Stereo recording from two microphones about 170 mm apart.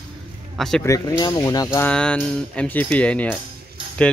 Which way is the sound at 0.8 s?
20° left (ahead or behind).